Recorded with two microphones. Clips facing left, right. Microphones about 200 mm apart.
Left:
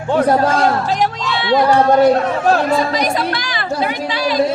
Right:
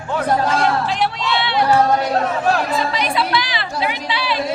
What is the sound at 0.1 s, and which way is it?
Speech, 40° left (ahead or behind).